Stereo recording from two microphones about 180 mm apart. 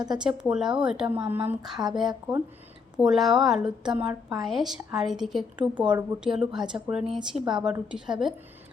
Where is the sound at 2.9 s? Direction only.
5° right (ahead or behind).